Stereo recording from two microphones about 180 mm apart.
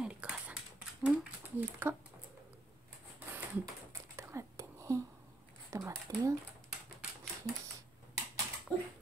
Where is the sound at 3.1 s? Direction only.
10° right (ahead or behind).